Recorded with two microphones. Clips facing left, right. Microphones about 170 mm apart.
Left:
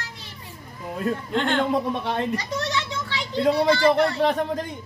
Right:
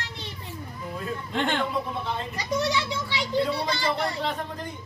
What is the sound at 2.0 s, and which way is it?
Speech, 80° left.